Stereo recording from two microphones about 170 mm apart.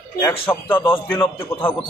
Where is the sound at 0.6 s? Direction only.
10° left (ahead or behind).